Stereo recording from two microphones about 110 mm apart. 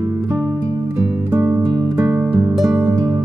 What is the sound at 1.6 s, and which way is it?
Music, 40° right (ahead or behind).